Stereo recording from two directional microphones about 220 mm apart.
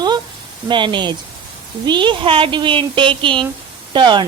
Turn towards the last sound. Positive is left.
turn(degrees=-20)  # may be behind; listen again after turning